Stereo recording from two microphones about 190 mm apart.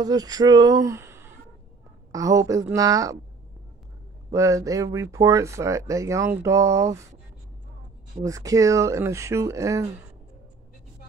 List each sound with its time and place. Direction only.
0.0 s speech: 20° right (ahead or behind)
4.3 s speech: 15° right (ahead or behind)
8.2 s speech: 15° right (ahead or behind)